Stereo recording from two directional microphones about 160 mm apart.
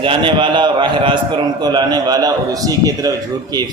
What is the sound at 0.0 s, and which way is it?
A man's voice, 30° right (ahead or behind).